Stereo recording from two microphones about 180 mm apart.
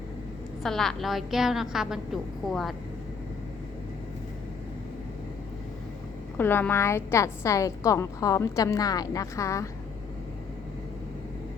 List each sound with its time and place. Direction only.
0.6 s a woman's voice: centre (ahead or behind)
6.3 s a woman's voice: 10° left (ahead or behind)